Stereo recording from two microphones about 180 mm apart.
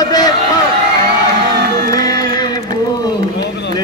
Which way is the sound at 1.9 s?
20° left (ahead or behind).